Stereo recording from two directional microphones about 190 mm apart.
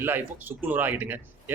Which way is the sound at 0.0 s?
10° right (ahead or behind).